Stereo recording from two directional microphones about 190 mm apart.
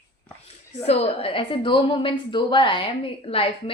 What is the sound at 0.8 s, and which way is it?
A woman's voice, 35° left (ahead or behind).